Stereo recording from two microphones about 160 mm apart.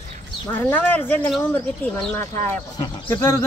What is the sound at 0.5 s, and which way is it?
Speech, 10° left (ahead or behind).